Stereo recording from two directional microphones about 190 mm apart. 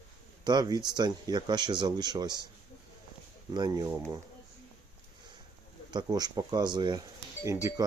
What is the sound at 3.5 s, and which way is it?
Speech, 20° right (ahead or behind).